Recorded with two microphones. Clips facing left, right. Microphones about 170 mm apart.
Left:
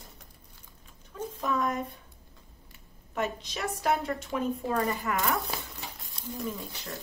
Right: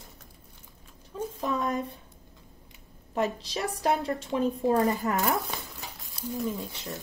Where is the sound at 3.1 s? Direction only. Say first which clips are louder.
Right 4 dB; 35° right (ahead or behind).